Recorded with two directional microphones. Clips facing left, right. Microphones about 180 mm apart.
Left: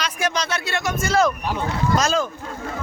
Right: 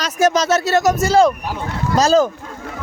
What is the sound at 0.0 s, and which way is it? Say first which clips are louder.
Speech: right 8 dB; 40° right (ahead or behind).